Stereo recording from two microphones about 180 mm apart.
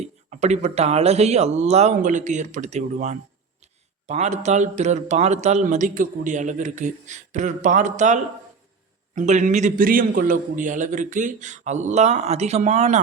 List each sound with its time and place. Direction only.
0.0 s a man's voice: 40° right (ahead or behind)